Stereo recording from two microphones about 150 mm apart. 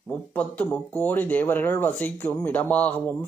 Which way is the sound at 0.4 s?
10° left (ahead or behind).